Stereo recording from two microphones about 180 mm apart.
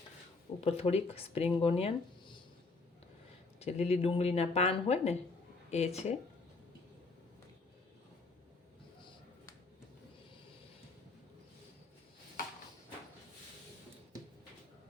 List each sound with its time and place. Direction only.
0.6 s speech: 35° left (ahead or behind)
3.6 s speech: 35° left (ahead or behind)